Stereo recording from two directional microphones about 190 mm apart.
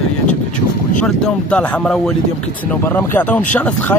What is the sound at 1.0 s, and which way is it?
Speech, 5° left (ahead or behind).